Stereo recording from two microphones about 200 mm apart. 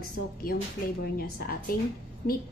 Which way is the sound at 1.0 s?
50° left (ahead or behind).